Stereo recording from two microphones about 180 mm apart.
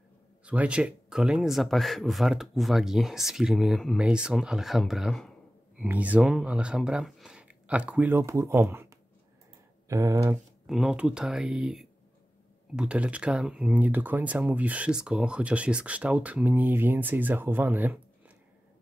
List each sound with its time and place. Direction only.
0.5 s speech: 5° right (ahead or behind)
9.8 s speech: 15° right (ahead or behind)
10.3 s speech: 5° right (ahead or behind)